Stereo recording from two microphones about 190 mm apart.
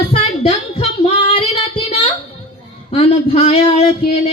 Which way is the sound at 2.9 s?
30° left (ahead or behind).